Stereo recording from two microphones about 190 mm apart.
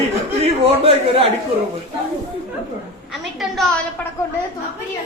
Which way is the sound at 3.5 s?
Centre (ahead or behind).